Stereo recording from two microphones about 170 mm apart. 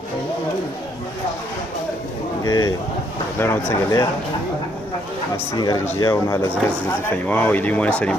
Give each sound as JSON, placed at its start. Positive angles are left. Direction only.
{"t": 2.4, "sound": "a sound", "side_deg": 25}
{"t": 3.3, "sound": "speech", "side_deg": 15}
{"t": 5.5, "sound": "speech", "side_deg": 25}